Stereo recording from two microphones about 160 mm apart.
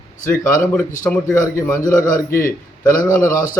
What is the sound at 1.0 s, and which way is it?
Speech, 15° left (ahead or behind).